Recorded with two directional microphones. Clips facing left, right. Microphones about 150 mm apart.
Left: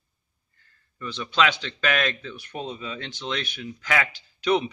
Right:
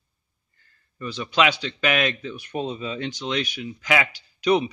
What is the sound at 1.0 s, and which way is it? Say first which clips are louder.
Speech: right 2 dB; 10° right (ahead or behind).